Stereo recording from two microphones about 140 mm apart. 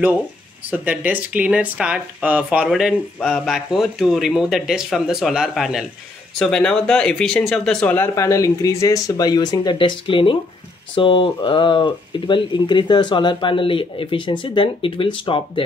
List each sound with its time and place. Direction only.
0.7 s speech: 10° right (ahead or behind); by 15.6 s 40° left (ahead or behind)